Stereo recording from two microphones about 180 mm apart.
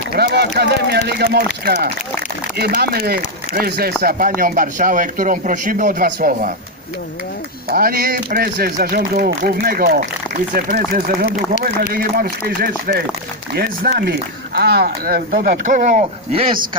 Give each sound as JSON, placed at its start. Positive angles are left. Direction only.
{"t": 0.1, "sound": "speech", "side_deg": -65}
{"t": 2.6, "sound": "speech", "side_deg": -60}
{"t": 7.7, "sound": "speech", "side_deg": -55}